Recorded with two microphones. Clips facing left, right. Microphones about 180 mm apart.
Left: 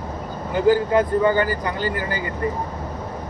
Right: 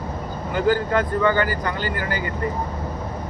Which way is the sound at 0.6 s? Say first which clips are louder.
Left 4 dB; 15° left (ahead or behind).